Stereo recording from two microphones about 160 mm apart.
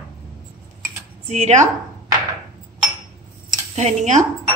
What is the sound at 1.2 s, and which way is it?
Speech, 45° right (ahead or behind).